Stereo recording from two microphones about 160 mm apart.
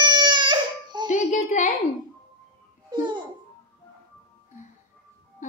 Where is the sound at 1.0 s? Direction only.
50° left (ahead or behind).